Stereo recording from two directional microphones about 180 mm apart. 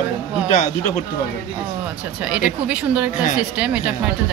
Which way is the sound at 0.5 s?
40° left (ahead or behind).